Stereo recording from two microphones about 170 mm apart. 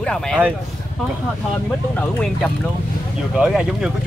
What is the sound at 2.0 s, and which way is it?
Speech, 10° left (ahead or behind).